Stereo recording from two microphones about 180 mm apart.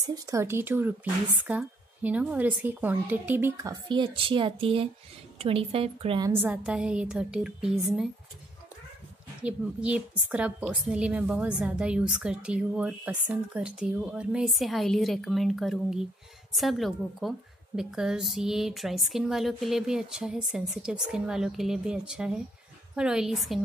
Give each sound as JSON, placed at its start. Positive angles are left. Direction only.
{"t": 0.0, "sound": "a woman's voice", "side_deg": -20}
{"t": 6.4, "sound": "a woman's voice", "side_deg": -5}
{"t": 9.4, "sound": "a woman's voice", "side_deg": -5}